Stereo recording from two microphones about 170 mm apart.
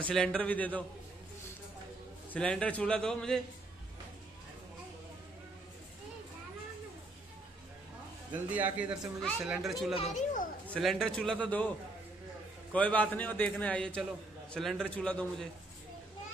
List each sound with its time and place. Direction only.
0.0 s a man's voice: 5° left (ahead or behind)
2.3 s a man's voice: 5° left (ahead or behind)
8.3 s a man's voice: 10° right (ahead or behind)
9.9 s a child's voice: 45° left (ahead or behind)
10.7 s a man's voice: centre (ahead or behind)
12.7 s a man's voice: 10° left (ahead or behind)